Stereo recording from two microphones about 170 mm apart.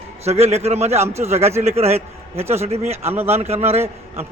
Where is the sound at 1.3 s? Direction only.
15° right (ahead or behind).